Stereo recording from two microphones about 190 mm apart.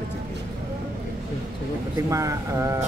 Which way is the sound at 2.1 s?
15° right (ahead or behind).